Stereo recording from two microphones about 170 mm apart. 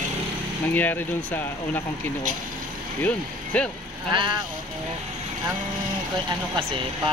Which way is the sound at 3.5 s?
5° left (ahead or behind).